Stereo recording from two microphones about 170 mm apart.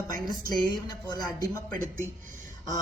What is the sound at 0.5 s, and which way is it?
Speech, 25° left (ahead or behind).